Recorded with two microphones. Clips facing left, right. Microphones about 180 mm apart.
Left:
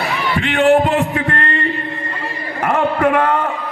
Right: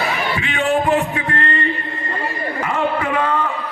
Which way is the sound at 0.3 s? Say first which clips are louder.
Left 8 dB; 65° left (ahead or behind).